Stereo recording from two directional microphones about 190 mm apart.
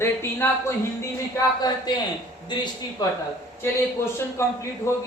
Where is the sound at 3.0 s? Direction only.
20° left (ahead or behind).